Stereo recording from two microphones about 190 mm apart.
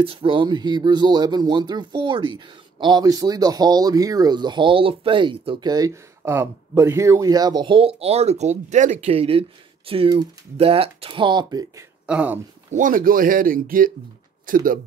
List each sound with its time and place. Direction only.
0.0 s speech: 30° right (ahead or behind)
12.1 s speech: 5° right (ahead or behind)
12.7 s speech: 45° right (ahead or behind)